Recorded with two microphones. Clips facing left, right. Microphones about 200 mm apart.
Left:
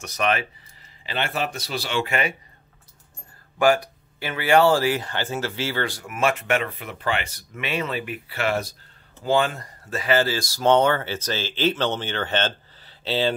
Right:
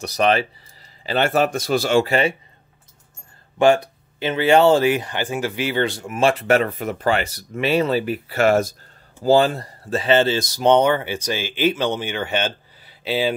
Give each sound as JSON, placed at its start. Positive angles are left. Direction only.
{"t": 0.0, "sound": "speech", "side_deg": -35}
{"t": 1.0, "sound": "a man's voice", "side_deg": -45}
{"t": 3.5, "sound": "speech", "side_deg": -25}